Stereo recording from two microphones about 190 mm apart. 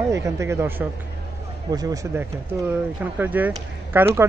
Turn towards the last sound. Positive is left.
turn(degrees=-10)  # may be behind; listen again after turning